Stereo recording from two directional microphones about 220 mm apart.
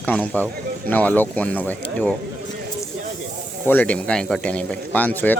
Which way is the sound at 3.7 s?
5° left (ahead or behind).